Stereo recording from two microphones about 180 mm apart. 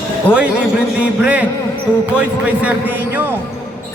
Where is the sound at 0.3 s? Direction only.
10° left (ahead or behind).